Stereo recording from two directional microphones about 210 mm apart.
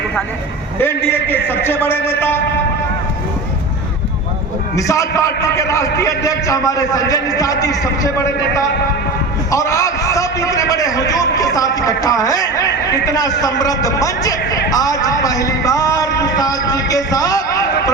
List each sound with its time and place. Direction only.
0.8 s a man's voice: 10° left (ahead or behind)
4.8 s a man's voice: 15° left (ahead or behind)